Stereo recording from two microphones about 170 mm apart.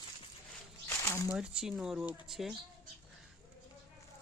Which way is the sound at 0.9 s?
15° left (ahead or behind).